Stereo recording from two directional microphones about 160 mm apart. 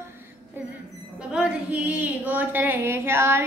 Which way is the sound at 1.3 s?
5° right (ahead or behind).